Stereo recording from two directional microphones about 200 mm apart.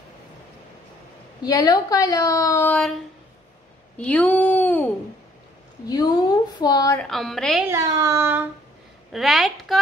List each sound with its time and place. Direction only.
1.4 s speech: 20° left (ahead or behind)
4.0 s speech: 5° left (ahead or behind)
5.9 s a woman's voice: 20° left (ahead or behind)
7.0 s a woman's voice: centre (ahead or behind)
7.6 s speech: 15° right (ahead or behind)
9.1 s a woman's voice: centre (ahead or behind)